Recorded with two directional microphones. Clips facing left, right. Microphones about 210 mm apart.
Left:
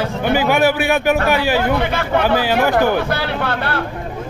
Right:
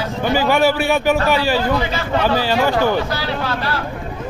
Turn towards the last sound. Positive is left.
turn(degrees=60)  # may be behind; listen again after turning